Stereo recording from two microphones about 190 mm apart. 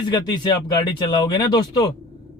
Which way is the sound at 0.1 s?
20° left (ahead or behind).